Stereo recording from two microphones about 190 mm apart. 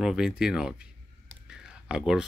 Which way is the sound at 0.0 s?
5° right (ahead or behind).